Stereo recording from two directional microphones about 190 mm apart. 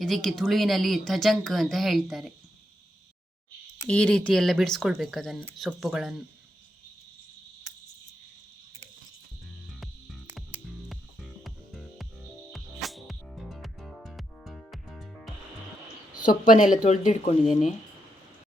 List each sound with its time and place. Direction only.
0.0 s speech: centre (ahead or behind)
3.8 s speech: 5° left (ahead or behind)
9.8 s music: centre (ahead or behind)
16.2 s speech: 45° left (ahead or behind)